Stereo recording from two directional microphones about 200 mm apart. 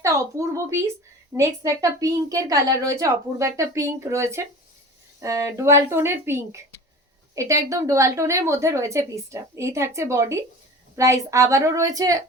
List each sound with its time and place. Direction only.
0.0 s a woman's voice: 15° right (ahead or behind)